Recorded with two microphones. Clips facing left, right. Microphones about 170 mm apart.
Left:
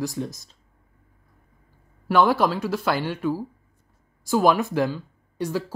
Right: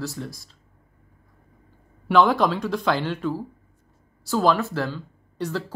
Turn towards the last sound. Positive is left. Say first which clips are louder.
# left 2 dB
turn(degrees=10)  # may be behind; listen again after turning